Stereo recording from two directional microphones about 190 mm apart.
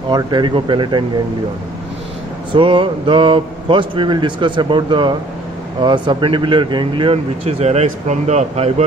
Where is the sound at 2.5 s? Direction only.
25° right (ahead or behind).